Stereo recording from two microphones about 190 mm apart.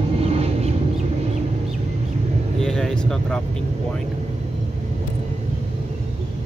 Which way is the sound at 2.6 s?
5° left (ahead or behind).